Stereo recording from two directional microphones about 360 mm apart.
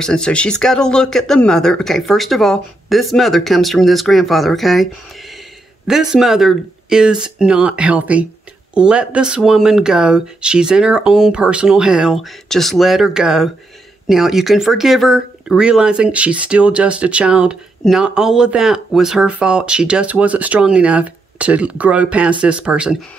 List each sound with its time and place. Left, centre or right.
0.0 s speech: centre
5.9 s speech: centre